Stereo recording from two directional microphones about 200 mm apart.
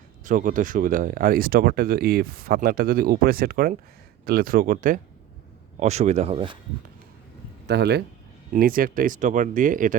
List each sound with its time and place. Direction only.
0.3 s speech: 40° right (ahead or behind)
7.7 s speech: 55° right (ahead or behind)